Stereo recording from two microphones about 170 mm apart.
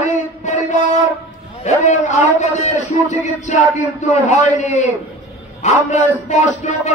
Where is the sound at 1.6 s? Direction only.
45° left (ahead or behind).